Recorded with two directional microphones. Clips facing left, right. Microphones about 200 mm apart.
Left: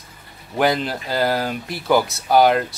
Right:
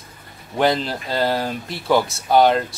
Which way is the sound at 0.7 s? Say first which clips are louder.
Even; centre (ahead or behind).